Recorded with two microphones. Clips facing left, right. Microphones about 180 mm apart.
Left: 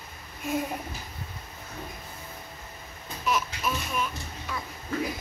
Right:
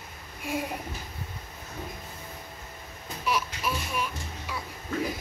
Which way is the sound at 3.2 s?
10° right (ahead or behind).